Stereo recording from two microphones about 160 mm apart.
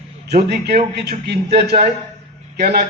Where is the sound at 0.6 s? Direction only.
80° right.